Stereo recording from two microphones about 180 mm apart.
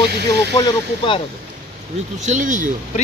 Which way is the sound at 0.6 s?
30° left (ahead or behind).